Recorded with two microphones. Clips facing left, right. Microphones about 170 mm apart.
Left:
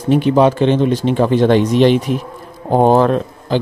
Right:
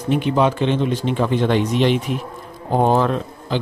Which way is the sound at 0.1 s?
45° left (ahead or behind).